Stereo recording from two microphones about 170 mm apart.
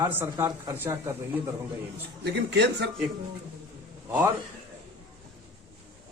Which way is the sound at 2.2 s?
80° right.